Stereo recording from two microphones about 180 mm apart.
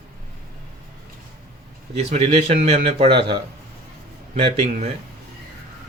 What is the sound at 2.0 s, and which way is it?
Speech, 35° right (ahead or behind).